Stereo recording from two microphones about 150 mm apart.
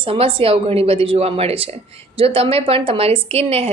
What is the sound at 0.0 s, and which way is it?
Speech, 40° right (ahead or behind).